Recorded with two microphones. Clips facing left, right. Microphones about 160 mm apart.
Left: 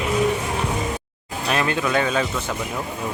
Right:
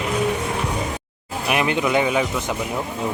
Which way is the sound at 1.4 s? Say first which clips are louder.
Right 2 dB; 15° right (ahead or behind).